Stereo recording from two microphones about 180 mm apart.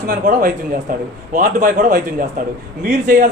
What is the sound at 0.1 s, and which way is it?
Speech, 50° right (ahead or behind).